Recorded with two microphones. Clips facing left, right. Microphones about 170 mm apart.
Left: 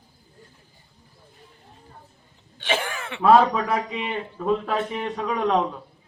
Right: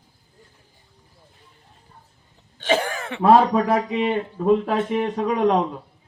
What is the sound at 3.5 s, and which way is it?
Speech, 40° right (ahead or behind).